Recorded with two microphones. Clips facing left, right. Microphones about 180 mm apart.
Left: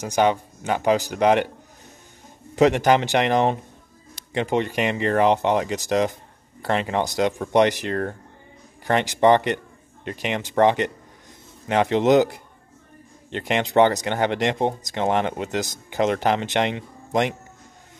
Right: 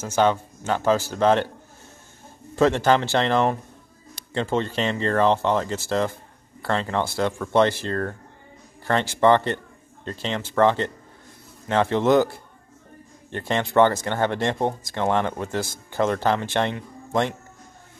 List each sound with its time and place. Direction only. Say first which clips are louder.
0.0 s speech: left 1 dB; 15° left (ahead or behind)
2.5 s speech: left 2 dB; 15° left (ahead or behind)